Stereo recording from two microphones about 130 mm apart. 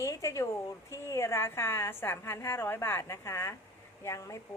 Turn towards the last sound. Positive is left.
turn(degrees=25)  # may be behind; listen again after turning